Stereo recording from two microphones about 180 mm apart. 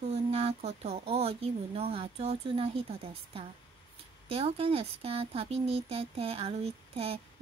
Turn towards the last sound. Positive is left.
turn(degrees=-30)  # may be behind; listen again after turning